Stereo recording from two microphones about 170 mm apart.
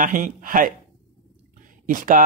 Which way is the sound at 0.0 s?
50° right (ahead or behind).